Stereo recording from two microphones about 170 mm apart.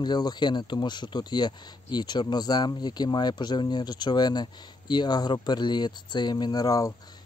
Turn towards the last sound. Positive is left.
turn(degrees=20)  # may be behind; listen again after turning